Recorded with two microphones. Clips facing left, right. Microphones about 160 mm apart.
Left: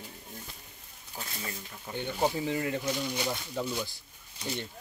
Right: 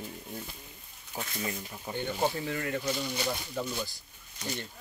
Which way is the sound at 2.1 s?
10° left (ahead or behind).